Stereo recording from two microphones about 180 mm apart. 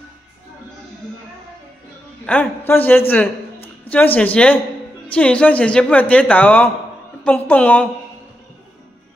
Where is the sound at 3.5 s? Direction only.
35° left (ahead or behind).